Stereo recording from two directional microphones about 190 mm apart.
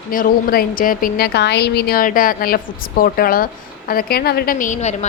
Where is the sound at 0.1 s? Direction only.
45° left (ahead or behind).